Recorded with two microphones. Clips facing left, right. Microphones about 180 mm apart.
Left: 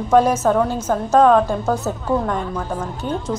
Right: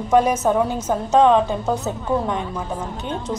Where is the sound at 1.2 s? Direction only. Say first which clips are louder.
Left 2 dB; centre (ahead or behind).